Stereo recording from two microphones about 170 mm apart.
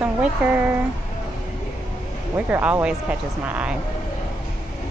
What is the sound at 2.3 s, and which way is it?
Speech, 10° right (ahead or behind).